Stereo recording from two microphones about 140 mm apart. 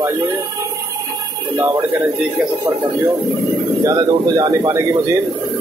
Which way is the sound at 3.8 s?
25° right (ahead or behind).